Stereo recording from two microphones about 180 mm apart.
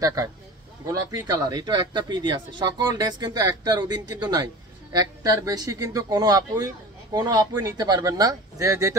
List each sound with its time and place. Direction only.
0.0 s speech: 20° right (ahead or behind)